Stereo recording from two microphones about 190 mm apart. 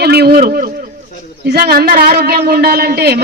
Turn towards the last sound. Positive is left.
turn(degrees=-55)  # may be behind; listen again after turning